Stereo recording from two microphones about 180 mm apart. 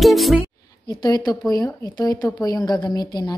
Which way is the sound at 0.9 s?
20° left (ahead or behind).